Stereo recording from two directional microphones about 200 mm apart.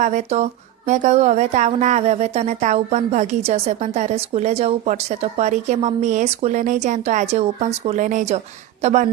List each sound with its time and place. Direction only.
0.0 s a woman's voice: 35° right (ahead or behind)